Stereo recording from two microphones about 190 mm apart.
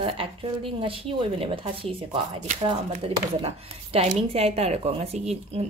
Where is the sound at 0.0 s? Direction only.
30° right (ahead or behind).